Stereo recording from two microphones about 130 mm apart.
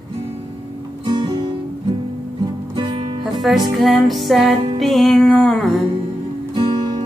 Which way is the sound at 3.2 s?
Centre (ahead or behind).